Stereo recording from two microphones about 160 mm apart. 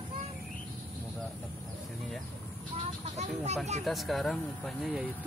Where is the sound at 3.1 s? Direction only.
45° right (ahead or behind).